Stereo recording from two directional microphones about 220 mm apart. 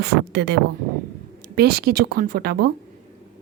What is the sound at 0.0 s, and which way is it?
A woman's voice, 45° right (ahead or behind).